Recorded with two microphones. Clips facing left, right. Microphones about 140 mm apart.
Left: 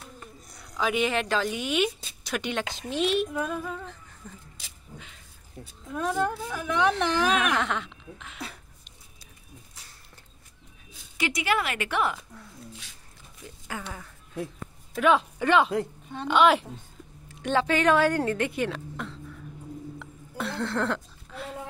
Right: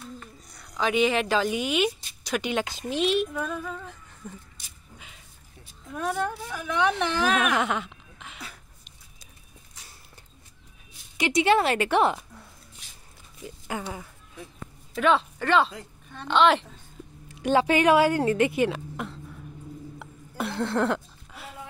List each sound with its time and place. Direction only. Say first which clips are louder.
0.5 s speech: right 1 dB; 5° left (ahead or behind)
4.9 s a sound: left 3 dB; 10° right (ahead or behind)
5.9 s speech: left 1 dB; centre (ahead or behind)
11.1 s speech: right 6 dB; 25° right (ahead or behind)
13.7 s speech: right 4 dB; 20° right (ahead or behind)
15.0 s speech: even; 10° left (ahead or behind)
17.4 s a woman's voice: right 3 dB; 10° right (ahead or behind)
20.0 s music: right 5 dB; 15° right (ahead or behind)